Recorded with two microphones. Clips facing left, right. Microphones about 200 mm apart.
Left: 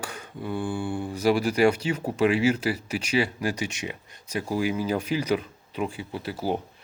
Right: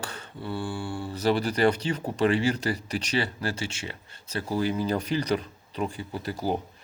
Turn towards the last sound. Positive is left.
turn(degrees=5)  # may be behind; listen again after turning